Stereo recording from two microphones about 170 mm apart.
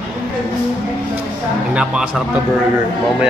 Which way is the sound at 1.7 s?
5° right (ahead or behind).